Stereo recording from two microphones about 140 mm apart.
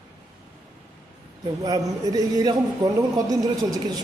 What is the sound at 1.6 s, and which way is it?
A man's voice, 30° right (ahead or behind).